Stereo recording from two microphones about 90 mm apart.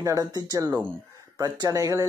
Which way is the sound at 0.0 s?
45° right (ahead or behind).